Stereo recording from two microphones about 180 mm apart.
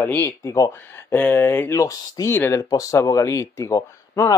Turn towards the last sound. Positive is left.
turn(degrees=15)  # may be behind; listen again after turning